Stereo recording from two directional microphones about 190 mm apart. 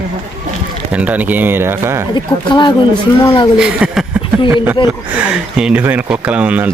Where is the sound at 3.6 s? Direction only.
5° right (ahead or behind).